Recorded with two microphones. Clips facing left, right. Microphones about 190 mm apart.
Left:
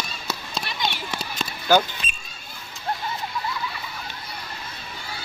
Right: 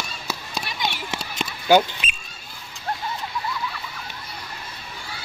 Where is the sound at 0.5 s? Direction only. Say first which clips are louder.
Even; 15° right (ahead or behind).